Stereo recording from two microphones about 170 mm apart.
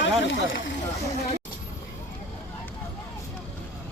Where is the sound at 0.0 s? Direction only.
90° left.